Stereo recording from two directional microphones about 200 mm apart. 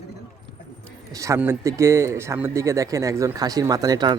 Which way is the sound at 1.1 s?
15° right (ahead or behind).